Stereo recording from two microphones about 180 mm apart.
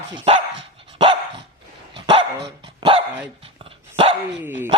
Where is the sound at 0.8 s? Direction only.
30° right (ahead or behind).